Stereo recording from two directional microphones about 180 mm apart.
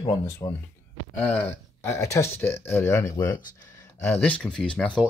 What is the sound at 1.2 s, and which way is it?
Speech, 5° left (ahead or behind).